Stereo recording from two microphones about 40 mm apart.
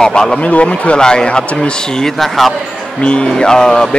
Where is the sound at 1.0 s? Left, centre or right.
Left.